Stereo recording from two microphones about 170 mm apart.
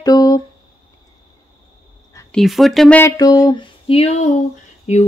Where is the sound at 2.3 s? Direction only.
Centre (ahead or behind).